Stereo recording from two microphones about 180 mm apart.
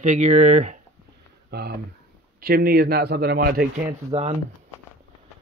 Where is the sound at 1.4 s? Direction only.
65° right (ahead or behind).